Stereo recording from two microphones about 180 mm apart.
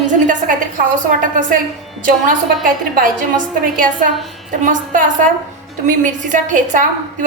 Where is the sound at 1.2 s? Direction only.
50° right (ahead or behind).